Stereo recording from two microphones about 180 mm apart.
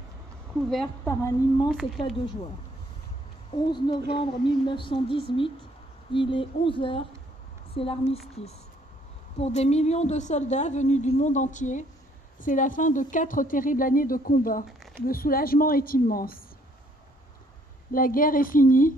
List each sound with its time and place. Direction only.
1.0 s speech: 15° left (ahead or behind)
3.5 s a woman's voice: 25° left (ahead or behind)
9.4 s a woman's voice: 35° left (ahead or behind); by 16.3 s 55° left (ahead or behind)
17.9 s a woman's voice: 50° left (ahead or behind)